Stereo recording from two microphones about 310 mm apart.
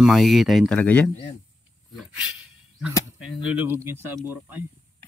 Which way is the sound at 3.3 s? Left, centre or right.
Centre.